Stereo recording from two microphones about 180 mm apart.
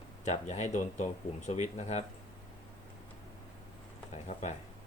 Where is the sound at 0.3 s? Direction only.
40° left (ahead or behind).